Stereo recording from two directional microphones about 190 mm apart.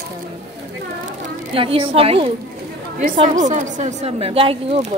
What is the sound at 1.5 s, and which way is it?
Speech, 30° right (ahead or behind).